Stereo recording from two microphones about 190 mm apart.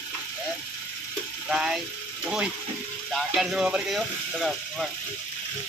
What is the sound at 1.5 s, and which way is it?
Speech, centre (ahead or behind).